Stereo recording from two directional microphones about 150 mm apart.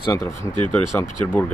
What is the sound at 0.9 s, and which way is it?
Speech, 15° left (ahead or behind).